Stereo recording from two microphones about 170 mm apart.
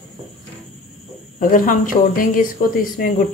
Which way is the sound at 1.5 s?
55° left (ahead or behind).